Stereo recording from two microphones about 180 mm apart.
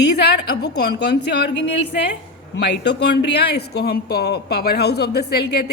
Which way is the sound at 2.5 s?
75° left (ahead or behind).